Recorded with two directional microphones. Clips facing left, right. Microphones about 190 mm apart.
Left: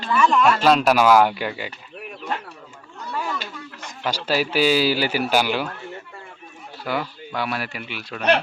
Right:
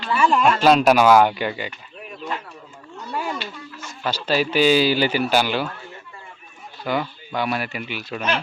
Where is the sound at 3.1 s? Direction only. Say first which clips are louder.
Right 1 dB; 25° right (ahead or behind).